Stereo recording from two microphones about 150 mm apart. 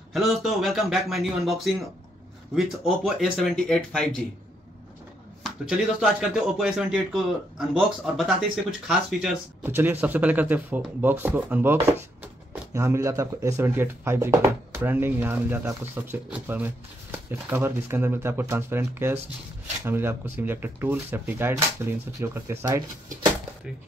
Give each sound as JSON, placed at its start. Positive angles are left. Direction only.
{"t": 0.1, "sound": "speech", "side_deg": 0}
{"t": 3.2, "sound": "speech", "side_deg": 0}
{"t": 5.4, "sound": "speech", "side_deg": -5}